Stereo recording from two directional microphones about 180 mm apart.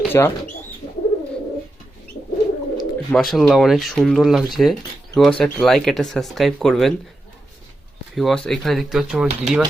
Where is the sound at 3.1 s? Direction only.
Centre (ahead or behind).